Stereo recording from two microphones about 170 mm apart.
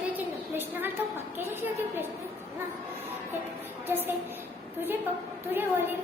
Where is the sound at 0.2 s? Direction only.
10° right (ahead or behind).